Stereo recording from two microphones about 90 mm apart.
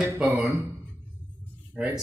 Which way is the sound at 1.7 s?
15° right (ahead or behind).